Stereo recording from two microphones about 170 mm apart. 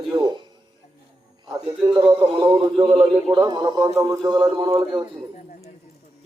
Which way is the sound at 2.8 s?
25° right (ahead or behind).